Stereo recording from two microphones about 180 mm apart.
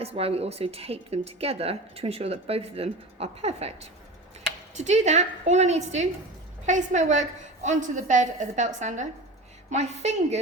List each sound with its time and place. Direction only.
0.0 s a woman's voice: 35° right (ahead or behind)